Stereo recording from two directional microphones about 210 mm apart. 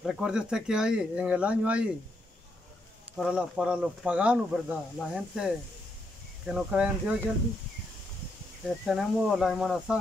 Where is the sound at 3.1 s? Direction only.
5° right (ahead or behind).